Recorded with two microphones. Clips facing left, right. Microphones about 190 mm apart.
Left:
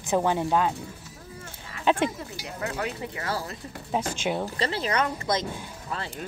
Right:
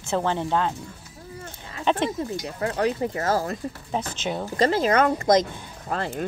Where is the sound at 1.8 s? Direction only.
10° left (ahead or behind).